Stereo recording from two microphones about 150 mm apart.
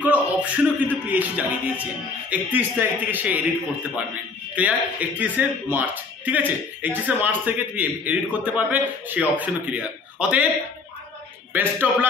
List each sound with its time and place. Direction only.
0.0 s a sound: 10° right (ahead or behind)
1.1 s speech: 10° right (ahead or behind)
4.6 s speech: 10° right (ahead or behind)
11.5 s speech: 10° right (ahead or behind)